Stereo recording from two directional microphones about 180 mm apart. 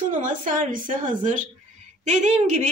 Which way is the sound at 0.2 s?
45° right (ahead or behind).